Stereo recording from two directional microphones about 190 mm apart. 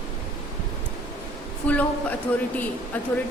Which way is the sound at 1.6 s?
5° left (ahead or behind).